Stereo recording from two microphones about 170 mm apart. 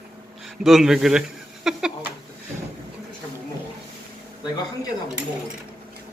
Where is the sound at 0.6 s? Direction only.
Centre (ahead or behind).